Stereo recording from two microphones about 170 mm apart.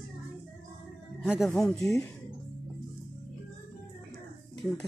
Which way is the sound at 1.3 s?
Centre (ahead or behind).